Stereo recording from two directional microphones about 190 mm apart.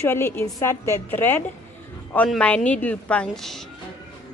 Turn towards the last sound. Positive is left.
turn(degrees=0)  # may be behind; listen again after turning